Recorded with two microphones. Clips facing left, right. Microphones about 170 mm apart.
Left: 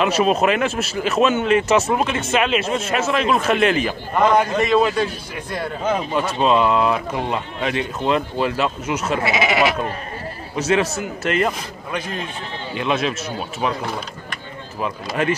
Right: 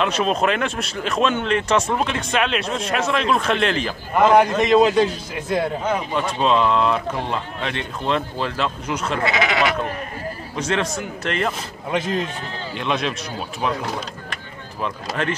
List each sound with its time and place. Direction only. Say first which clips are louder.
0.0 s speech: left 3 dB; 5° left (ahead or behind)
4.2 s a man's voice: right 2 dB; 10° right (ahead or behind)
6.1 s speech: left 2 dB; 5° left (ahead or behind)
9.3 s speech: left 3 dB; 20° left (ahead or behind)
10.6 s speech: left 4 dB; 5° left (ahead or behind)
12.7 s speech: left 2 dB; 5° left (ahead or behind)
15.2 s speech: left 4 dB; 10° left (ahead or behind)